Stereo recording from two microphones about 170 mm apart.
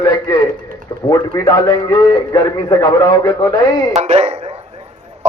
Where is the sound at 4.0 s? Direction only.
40° right (ahead or behind).